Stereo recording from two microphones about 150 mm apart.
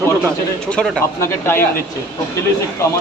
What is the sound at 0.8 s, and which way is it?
Speech, 5° left (ahead or behind).